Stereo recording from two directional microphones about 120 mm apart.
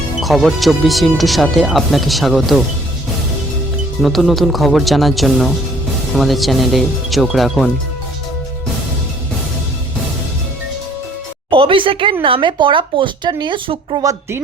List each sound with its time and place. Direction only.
0.2 s speech: centre (ahead or behind)
4.0 s speech: centre (ahead or behind)
11.5 s a sound: 45° right (ahead or behind)
12.2 s speech: 45° right (ahead or behind)
14.1 s speech: 20° right (ahead or behind)